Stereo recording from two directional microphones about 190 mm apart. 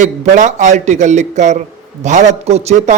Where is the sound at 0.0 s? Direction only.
40° right (ahead or behind).